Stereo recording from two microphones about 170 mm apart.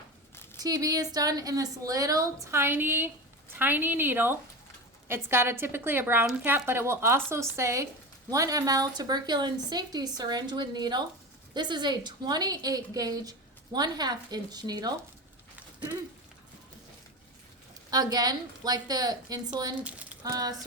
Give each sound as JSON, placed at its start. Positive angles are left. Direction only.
{"t": 0.6, "sound": "a woman's voice", "side_deg": -20}
{"t": 17.9, "sound": "a woman's voice", "side_deg": -25}
{"t": 19.8, "sound": "a woman's voice", "side_deg": -10}
{"t": 20.3, "sound": "a woman's voice", "side_deg": -20}